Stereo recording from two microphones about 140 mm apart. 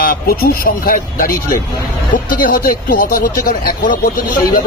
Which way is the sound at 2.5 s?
85° left.